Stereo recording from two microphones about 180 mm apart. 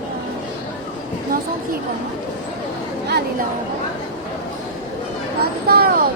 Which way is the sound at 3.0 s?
65° right (ahead or behind).